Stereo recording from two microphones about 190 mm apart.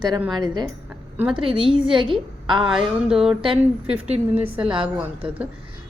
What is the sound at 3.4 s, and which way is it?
Speech, 30° right (ahead or behind).